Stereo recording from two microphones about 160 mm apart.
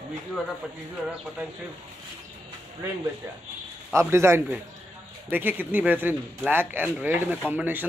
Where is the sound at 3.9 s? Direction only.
15° right (ahead or behind).